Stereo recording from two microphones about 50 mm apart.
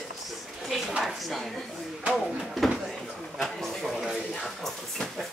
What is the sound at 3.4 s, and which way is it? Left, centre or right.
Speech, centre.